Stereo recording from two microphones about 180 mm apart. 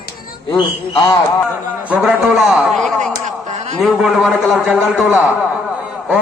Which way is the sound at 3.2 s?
40° right (ahead or behind).